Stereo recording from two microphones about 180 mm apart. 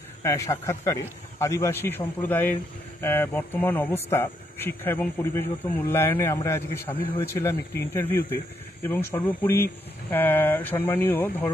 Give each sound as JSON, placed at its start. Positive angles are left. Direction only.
{"t": 0.2, "sound": "a man's voice", "side_deg": 15}